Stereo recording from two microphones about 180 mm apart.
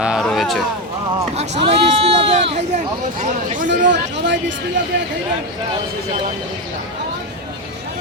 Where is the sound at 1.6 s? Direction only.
30° right (ahead or behind).